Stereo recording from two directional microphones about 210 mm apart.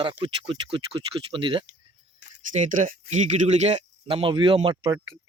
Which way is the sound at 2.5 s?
35° right (ahead or behind).